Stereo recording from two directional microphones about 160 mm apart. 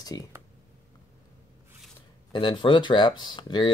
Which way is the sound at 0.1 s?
25° left (ahead or behind).